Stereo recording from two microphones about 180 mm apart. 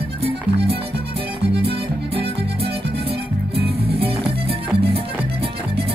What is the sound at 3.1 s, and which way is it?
Music, 60° right (ahead or behind).